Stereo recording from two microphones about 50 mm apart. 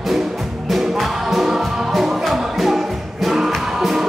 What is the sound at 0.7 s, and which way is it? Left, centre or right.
Music, centre.